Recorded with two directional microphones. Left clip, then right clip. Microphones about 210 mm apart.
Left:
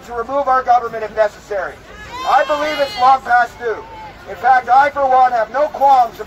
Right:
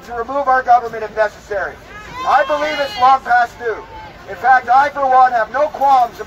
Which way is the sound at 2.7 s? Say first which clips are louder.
Even; 25° left (ahead or behind).